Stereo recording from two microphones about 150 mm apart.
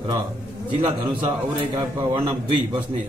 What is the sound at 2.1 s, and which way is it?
Speech, 30° right (ahead or behind).